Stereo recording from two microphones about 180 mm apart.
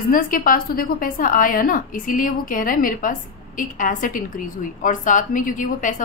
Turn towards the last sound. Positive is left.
turn(degrees=45)  # may be behind; listen again after turning